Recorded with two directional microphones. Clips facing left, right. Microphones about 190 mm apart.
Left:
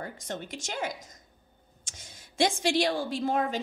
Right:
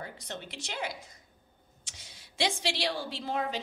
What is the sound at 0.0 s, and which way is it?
A woman's voice, 45° left (ahead or behind).